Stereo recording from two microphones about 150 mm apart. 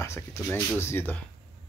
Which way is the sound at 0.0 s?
20° left (ahead or behind).